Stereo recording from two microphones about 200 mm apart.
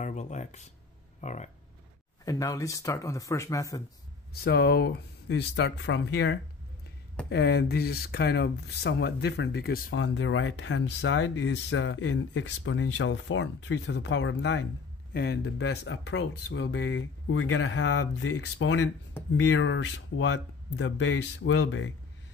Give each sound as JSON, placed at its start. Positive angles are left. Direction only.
{"t": 0.0, "sound": "speech", "side_deg": 35}
{"t": 2.2, "sound": "speech", "side_deg": 15}
{"t": 4.3, "sound": "speech", "side_deg": 50}
{"t": 9.9, "sound": "speech", "side_deg": 70}